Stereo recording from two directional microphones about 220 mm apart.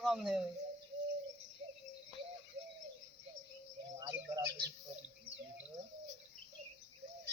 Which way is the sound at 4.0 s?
15° right (ahead or behind).